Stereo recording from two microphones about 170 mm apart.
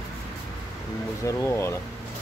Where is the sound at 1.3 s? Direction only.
15° left (ahead or behind).